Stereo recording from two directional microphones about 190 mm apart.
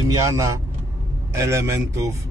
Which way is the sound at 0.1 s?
15° right (ahead or behind).